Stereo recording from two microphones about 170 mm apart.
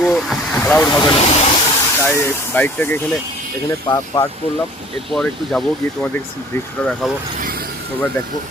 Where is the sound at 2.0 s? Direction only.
15° left (ahead or behind).